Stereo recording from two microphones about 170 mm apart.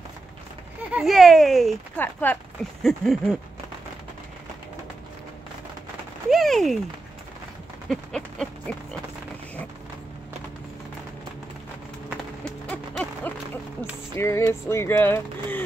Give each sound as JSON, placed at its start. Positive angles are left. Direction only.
{"t": 0.9, "sound": "speech", "side_deg": 0}
{"t": 6.3, "sound": "speech", "side_deg": 0}
{"t": 7.9, "sound": "owl", "side_deg": 5}
{"t": 12.4, "sound": "owl", "side_deg": 5}
{"t": 14.1, "sound": "speech", "side_deg": 15}